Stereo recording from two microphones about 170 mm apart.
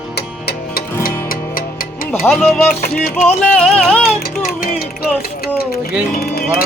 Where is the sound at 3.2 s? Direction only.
5° left (ahead or behind).